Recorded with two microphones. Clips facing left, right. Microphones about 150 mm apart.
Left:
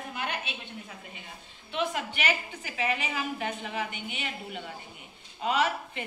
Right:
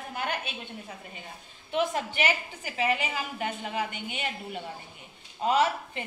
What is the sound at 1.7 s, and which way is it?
A woman's voice, 30° right (ahead or behind).